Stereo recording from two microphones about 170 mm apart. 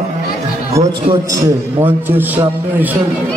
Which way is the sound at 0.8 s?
15° right (ahead or behind).